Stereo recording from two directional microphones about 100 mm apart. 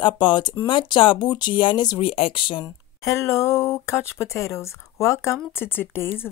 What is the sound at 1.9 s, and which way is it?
Speech, 70° left (ahead or behind).